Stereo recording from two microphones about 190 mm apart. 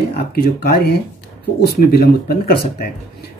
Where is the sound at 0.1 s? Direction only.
55° left (ahead or behind).